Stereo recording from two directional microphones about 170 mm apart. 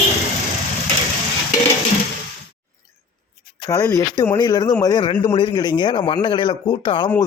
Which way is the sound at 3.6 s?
20° left (ahead or behind).